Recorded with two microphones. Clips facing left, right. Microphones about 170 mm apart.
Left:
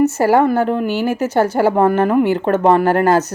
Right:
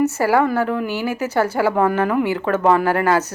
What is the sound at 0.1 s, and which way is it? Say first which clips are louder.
A woman's voice: left 4 dB; 25° left (ahead or behind).